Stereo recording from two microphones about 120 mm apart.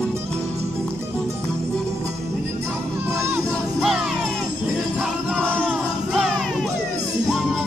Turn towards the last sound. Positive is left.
turn(degrees=0)  # may be behind; listen again after turning